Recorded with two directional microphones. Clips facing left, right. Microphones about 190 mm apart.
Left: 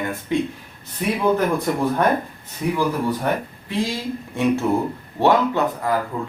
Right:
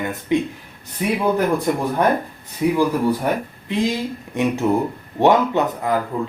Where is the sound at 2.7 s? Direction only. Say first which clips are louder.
Right 2 dB; 10° right (ahead or behind).